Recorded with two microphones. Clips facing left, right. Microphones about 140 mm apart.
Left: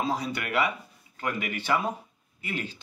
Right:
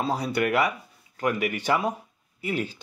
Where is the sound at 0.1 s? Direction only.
35° right (ahead or behind).